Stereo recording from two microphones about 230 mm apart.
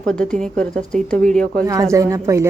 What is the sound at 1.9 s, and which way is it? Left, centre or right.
Speech, centre.